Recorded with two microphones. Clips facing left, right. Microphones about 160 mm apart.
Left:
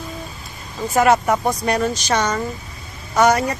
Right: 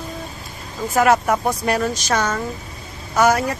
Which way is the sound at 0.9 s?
Centre (ahead or behind).